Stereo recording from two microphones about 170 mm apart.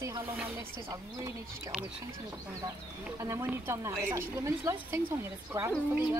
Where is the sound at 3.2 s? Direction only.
15° right (ahead or behind).